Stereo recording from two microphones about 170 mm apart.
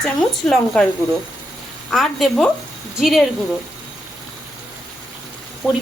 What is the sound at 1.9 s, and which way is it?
Speech, centre (ahead or behind).